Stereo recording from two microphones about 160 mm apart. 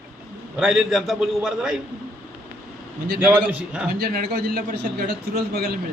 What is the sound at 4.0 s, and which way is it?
A man's voice, 70° right (ahead or behind).